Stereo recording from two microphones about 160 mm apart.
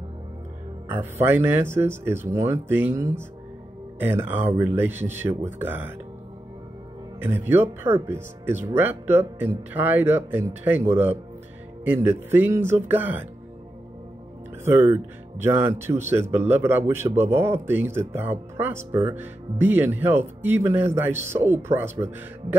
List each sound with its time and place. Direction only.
0.8 s speech: 15° right (ahead or behind)
7.2 s speech: 15° right (ahead or behind)
14.6 s speech: 15° right (ahead or behind)